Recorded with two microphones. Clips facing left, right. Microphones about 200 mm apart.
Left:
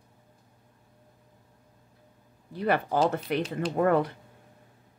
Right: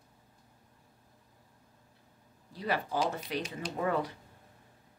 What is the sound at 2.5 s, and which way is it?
Speech, 60° left (ahead or behind).